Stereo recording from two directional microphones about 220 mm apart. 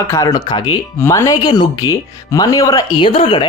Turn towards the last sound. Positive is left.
turn(degrees=25)  # may be behind; listen again after turning